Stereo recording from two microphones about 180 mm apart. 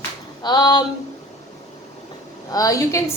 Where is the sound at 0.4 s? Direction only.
20° left (ahead or behind).